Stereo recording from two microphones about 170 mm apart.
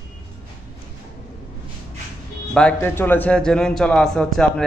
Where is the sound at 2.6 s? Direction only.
10° left (ahead or behind).